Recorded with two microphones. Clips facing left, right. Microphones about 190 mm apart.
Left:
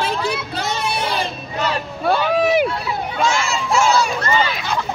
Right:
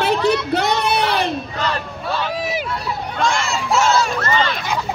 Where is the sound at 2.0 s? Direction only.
60° left (ahead or behind).